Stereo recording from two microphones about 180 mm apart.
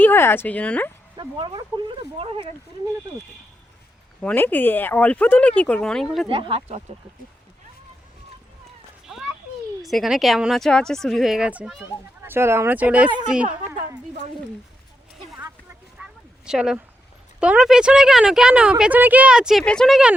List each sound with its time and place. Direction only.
0.0 s speech: 10° left (ahead or behind)
1.1 s speech: 25° right (ahead or behind)
4.2 s speech: 10° left (ahead or behind)
6.2 s speech: 30° right (ahead or behind)
9.1 s a sound: 5° right (ahead or behind)
9.8 s speech: centre (ahead or behind)
16.0 s a sound: 5° right (ahead or behind)
16.5 s speech: 5° right (ahead or behind)